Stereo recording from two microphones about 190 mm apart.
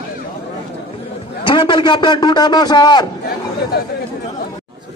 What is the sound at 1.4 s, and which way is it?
A man's voice, 25° left (ahead or behind).